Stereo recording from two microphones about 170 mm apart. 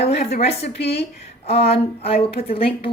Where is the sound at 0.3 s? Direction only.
40° left (ahead or behind).